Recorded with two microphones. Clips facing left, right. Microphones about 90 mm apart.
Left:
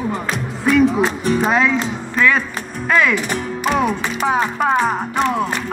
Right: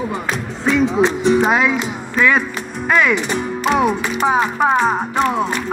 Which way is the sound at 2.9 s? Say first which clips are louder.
Right 1 dB; 20° right (ahead or behind).